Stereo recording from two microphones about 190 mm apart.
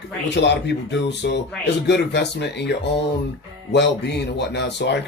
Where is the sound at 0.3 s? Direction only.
65° left (ahead or behind).